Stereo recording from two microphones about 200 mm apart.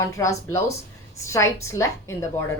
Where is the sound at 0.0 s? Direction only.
15° left (ahead or behind).